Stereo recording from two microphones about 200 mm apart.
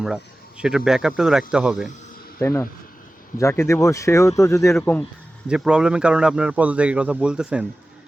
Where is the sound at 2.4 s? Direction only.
15° left (ahead or behind).